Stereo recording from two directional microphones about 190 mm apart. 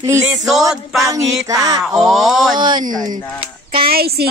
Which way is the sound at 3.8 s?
55° right (ahead or behind).